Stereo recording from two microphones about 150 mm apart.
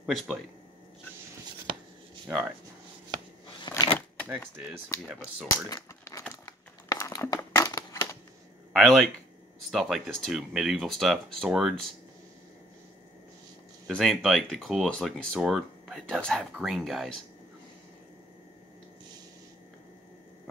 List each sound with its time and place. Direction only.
0.0 s speech: 5° right (ahead or behind)
2.2 s speech: 10° right (ahead or behind)
3.6 s a sound: 30° left (ahead or behind)
5.0 s speech: 5° right (ahead or behind)
5.5 s a sound: 20° left (ahead or behind)
7.3 s crushing: 20° left (ahead or behind)
8.7 s speech: centre (ahead or behind)
13.8 s speech: centre (ahead or behind)